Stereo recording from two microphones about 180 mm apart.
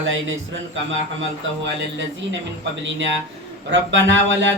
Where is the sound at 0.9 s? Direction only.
90° right.